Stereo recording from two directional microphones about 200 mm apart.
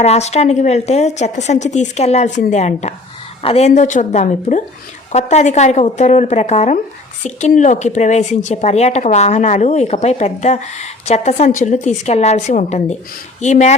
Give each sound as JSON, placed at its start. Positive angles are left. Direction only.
{"t": 0.0, "sound": "a woman's voice", "side_deg": 35}